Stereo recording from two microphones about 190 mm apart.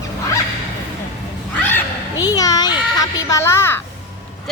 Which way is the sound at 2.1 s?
20° left (ahead or behind).